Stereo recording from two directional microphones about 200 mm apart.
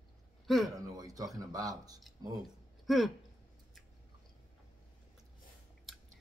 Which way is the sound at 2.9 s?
Centre (ahead or behind).